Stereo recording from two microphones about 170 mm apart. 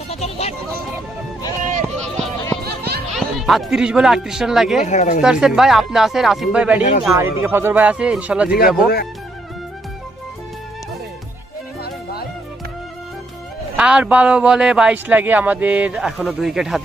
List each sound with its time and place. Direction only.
0.1 s music: 35° left (ahead or behind)
2.6 s a sound: 70° right (ahead or behind)
3.2 s speech: centre (ahead or behind)
4.8 s speech: 45° left (ahead or behind)
5.2 s speech: 5° right (ahead or behind)
8.7 s speech: 65° left (ahead or behind)
11.8 s music: 65° left (ahead or behind)
13.7 s speech: 5° right (ahead or behind)